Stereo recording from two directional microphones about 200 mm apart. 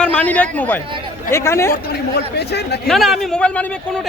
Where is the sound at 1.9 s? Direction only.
55° left (ahead or behind).